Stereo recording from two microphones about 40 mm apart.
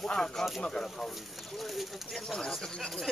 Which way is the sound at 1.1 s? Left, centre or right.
Centre.